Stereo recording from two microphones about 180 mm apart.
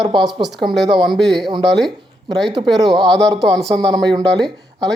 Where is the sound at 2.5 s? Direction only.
20° right (ahead or behind).